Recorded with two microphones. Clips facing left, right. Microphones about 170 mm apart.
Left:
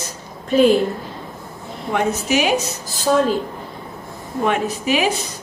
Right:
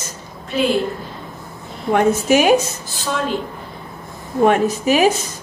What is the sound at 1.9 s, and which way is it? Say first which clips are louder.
Speech: right 5 dB; 50° right (ahead or behind).